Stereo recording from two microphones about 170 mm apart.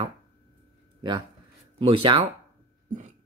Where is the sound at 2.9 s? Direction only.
45° right (ahead or behind).